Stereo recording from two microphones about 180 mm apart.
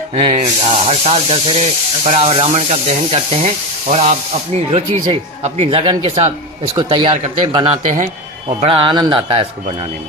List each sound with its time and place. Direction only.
0.1 s speech: 35° right (ahead or behind)